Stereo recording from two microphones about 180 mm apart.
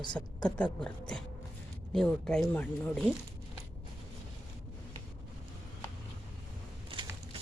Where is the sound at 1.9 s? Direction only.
5° left (ahead or behind).